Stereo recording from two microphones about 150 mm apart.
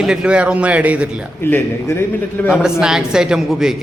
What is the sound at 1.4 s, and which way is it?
Speech, 15° left (ahead or behind).